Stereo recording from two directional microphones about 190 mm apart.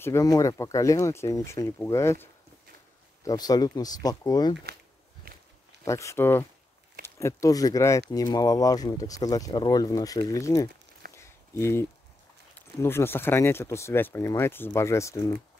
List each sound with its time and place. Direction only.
0.0 s speech: 15° left (ahead or behind)
3.3 s speech: 20° left (ahead or behind)
5.9 s speech: 15° left (ahead or behind)
11.1 s a sound: 15° left (ahead or behind)
12.5 s speech: 10° left (ahead or behind)